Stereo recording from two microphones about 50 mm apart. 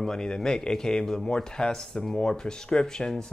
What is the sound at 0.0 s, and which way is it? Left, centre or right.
A man's voice, centre.